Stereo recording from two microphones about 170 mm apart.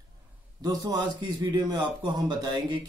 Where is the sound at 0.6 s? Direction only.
20° right (ahead or behind).